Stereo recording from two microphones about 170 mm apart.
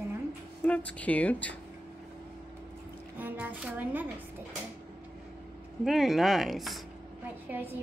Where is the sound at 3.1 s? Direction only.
10° right (ahead or behind).